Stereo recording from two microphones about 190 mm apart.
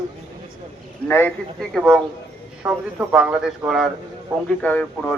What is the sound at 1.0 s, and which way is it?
Speech, 10° left (ahead or behind).